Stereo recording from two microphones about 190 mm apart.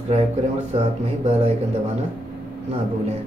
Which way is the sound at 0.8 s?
35° right (ahead or behind).